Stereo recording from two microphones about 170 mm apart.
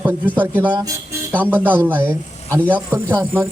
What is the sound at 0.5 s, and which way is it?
Speech, 10° right (ahead or behind).